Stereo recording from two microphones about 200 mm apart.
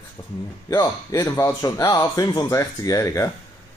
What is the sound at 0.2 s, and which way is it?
Speech, 15° left (ahead or behind).